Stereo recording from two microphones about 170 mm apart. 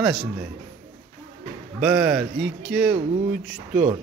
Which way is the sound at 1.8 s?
5° right (ahead or behind).